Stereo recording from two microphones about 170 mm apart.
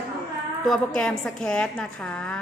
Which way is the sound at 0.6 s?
5° left (ahead or behind).